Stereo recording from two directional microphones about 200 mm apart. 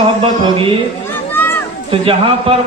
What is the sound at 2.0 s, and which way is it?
Speech, 25° right (ahead or behind).